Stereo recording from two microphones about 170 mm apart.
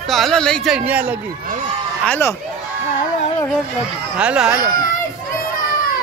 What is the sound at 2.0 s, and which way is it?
Speech, 10° left (ahead or behind).